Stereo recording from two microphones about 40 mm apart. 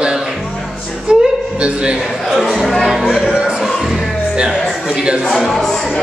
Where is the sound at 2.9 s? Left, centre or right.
Centre.